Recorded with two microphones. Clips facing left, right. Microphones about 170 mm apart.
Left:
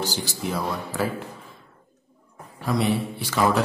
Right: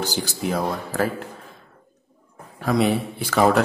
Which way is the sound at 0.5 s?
45° right (ahead or behind).